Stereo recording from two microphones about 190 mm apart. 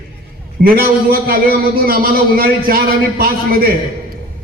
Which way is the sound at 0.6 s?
50° right (ahead or behind).